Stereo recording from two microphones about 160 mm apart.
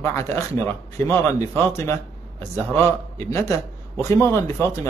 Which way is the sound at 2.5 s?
15° left (ahead or behind).